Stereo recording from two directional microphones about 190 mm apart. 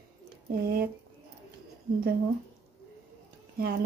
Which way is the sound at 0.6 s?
55° right (ahead or behind).